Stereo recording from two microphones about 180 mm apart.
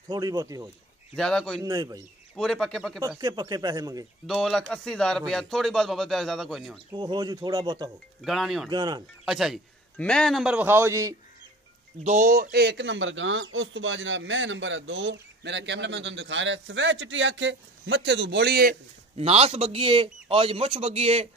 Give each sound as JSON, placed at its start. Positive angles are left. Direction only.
{"t": 0.1, "sound": "speech", "side_deg": -20}
{"t": 1.1, "sound": "a man's voice", "side_deg": 5}
{"t": 1.6, "sound": "speech", "side_deg": -20}
{"t": 2.3, "sound": "a man's voice", "side_deg": 0}
{"t": 3.2, "sound": "speech", "side_deg": -20}
{"t": 4.3, "sound": "a man's voice", "side_deg": 0}
{"t": 6.9, "sound": "speech", "side_deg": -25}
{"t": 8.2, "sound": "a man's voice", "side_deg": 0}
{"t": 8.6, "sound": "speech", "side_deg": -25}
{"t": 9.2, "sound": "a man's voice", "side_deg": 0}
{"t": 12.0, "sound": "speech", "side_deg": -45}
{"t": 19.1, "sound": "speech", "side_deg": -35}